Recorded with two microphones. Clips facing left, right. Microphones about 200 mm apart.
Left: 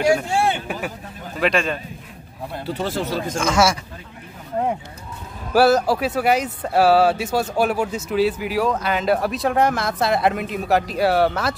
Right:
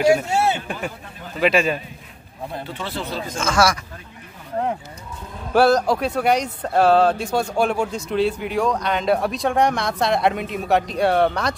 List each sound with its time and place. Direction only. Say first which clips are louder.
0.0 s speech: right 1 dB; 25° right (ahead or behind)
0.7 s speech: left 1 dB; 5° left (ahead or behind)
2.7 s speech: left 9 dB; 45° left (ahead or behind)
3.3 s speech: even; 20° left (ahead or behind)
5.5 s speech: even; 5° left (ahead or behind)